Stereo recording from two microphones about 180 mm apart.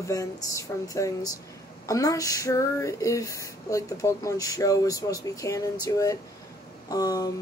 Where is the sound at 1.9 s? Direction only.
20° left (ahead or behind).